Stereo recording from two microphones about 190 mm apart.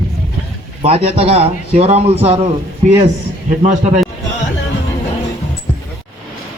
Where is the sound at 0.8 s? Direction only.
35° right (ahead or behind).